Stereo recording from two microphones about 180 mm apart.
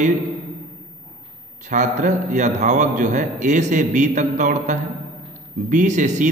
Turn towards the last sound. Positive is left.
turn(degrees=-45)  # may be behind; listen again after turning